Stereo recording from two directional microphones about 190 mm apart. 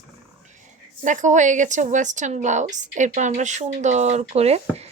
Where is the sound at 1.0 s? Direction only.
40° right (ahead or behind).